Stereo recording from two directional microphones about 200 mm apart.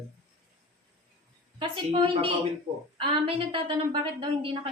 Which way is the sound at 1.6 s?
30° right (ahead or behind).